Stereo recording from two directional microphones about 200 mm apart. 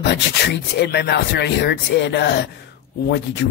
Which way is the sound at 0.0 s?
60° left (ahead or behind).